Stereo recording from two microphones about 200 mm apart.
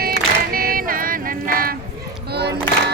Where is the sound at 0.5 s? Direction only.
45° right (ahead or behind).